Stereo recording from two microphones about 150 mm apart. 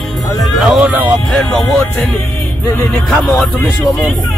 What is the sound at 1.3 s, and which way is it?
Speech, 5° left (ahead or behind).